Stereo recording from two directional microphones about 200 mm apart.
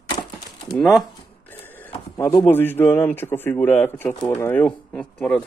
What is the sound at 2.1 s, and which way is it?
Speech, 10° left (ahead or behind).